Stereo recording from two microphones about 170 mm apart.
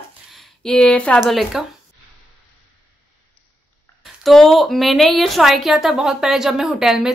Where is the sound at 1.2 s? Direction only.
Centre (ahead or behind).